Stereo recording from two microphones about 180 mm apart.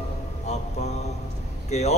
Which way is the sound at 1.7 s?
40° left (ahead or behind).